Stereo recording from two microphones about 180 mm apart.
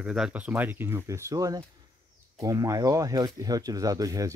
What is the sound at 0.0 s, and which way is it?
Speech, 5° right (ahead or behind).